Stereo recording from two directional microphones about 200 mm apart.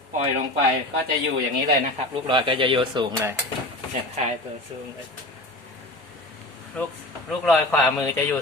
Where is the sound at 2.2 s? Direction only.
25° right (ahead or behind).